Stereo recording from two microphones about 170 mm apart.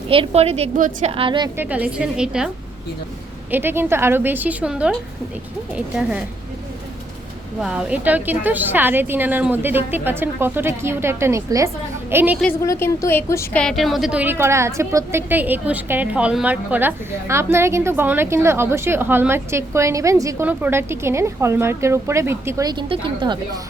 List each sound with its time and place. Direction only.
0.1 s a woman's voice: 35° right (ahead or behind)
1.5 s a woman's voice: 10° right (ahead or behind)
3.5 s a woman's voice: 15° right (ahead or behind)
7.6 s a woman's voice: 5° right (ahead or behind)
12.6 s a woman's voice: 15° left (ahead or behind)
13.6 s a woman's voice: centre (ahead or behind); by 23.4 s 30° right (ahead or behind)